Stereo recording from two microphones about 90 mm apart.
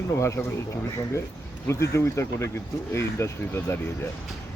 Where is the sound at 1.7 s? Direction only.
30° left (ahead or behind).